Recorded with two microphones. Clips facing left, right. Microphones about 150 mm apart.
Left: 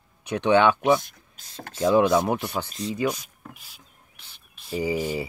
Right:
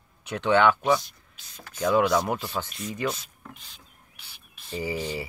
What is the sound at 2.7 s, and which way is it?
Speech, 35° left (ahead or behind).